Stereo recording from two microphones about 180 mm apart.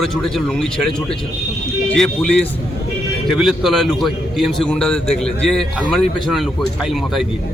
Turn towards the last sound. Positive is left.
turn(degrees=0)  # may be behind; listen again after turning